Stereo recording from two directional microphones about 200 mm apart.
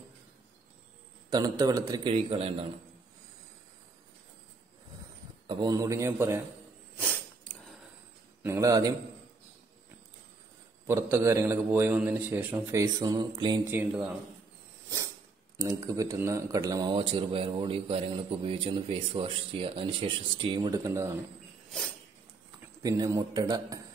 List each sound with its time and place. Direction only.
1.3 s speech: 20° right (ahead or behind)
2.1 s speech: 30° right (ahead or behind)
5.5 s a man's voice: 20° right (ahead or behind)
7.0 s a sound: 5° left (ahead or behind)
8.4 s a man's voice: 15° right (ahead or behind)
10.9 s a man's voice: 15° right (ahead or behind)
13.7 s a man's voice: 10° right (ahead or behind)
15.5 s speech: 15° right (ahead or behind)
22.8 s speech: 20° right (ahead or behind)